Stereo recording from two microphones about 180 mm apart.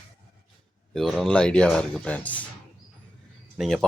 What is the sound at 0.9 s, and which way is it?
Speech, centre (ahead or behind).